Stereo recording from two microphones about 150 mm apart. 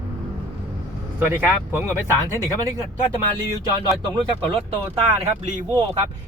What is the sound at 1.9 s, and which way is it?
Speech, 15° left (ahead or behind).